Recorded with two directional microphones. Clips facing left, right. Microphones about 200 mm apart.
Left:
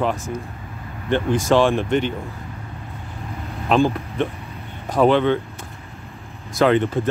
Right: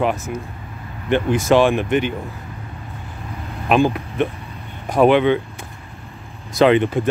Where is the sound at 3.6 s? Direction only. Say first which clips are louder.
Right 1 dB; 15° right (ahead or behind).